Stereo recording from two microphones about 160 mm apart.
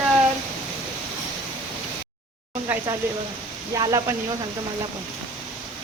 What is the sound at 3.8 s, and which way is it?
Speech, 25° right (ahead or behind).